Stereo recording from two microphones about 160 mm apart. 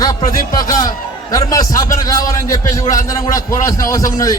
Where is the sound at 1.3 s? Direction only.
20° left (ahead or behind).